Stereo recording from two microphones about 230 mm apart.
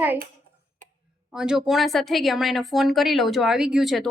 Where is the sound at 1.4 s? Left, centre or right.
Centre.